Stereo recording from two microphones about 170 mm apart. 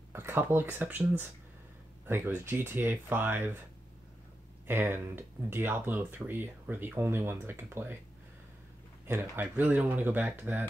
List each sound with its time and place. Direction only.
0.1 s speech: 15° right (ahead or behind)
4.6 s speech: 15° right (ahead or behind)
9.0 s speech: 10° right (ahead or behind)